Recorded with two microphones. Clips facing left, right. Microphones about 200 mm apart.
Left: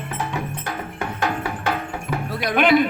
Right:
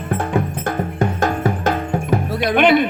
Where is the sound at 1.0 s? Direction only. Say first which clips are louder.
Right 6 dB; 45° right (ahead or behind).